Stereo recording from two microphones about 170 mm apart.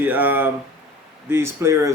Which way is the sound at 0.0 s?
10° right (ahead or behind).